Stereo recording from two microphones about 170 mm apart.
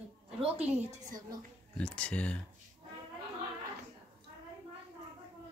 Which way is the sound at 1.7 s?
5° left (ahead or behind).